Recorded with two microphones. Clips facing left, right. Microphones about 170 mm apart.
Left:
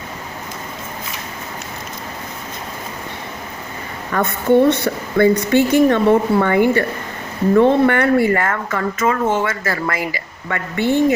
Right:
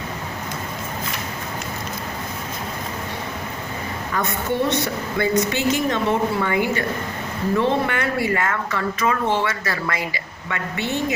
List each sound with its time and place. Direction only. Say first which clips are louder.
4.1 s a woman's voice: left 10 dB; 55° left (ahead or behind)